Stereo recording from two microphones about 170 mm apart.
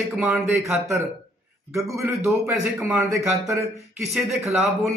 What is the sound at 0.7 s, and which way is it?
Speech, 15° right (ahead or behind).